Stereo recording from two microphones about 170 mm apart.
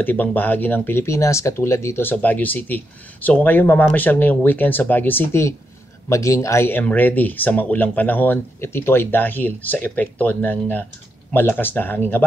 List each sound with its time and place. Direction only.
0.0 s speech: 10° left (ahead or behind)